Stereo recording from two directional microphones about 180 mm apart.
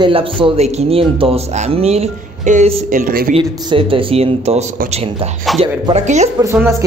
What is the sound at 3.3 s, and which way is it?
A woman's voice, 30° right (ahead or behind).